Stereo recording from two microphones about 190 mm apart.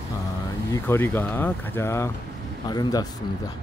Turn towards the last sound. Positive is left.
turn(degrees=20)  # may be behind; listen again after turning